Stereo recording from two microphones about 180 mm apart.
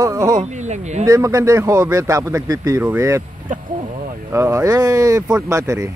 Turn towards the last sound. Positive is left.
turn(degrees=-15)  # may be behind; listen again after turning